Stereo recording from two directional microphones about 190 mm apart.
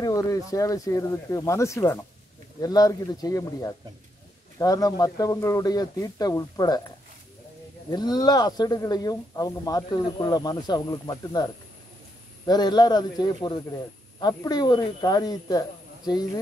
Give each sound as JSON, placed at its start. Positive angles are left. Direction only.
{"t": 0.0, "sound": "speech", "side_deg": 20}
{"t": 7.9, "sound": "speech", "side_deg": 20}